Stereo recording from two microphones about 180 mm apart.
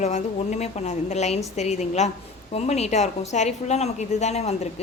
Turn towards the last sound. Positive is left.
turn(degrees=35)  # may be behind; listen again after turning